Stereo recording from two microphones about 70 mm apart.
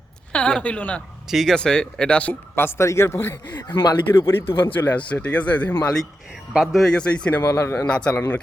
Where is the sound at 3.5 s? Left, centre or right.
Left.